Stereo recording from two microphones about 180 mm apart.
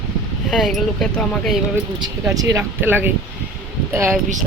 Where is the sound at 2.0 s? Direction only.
20° right (ahead or behind).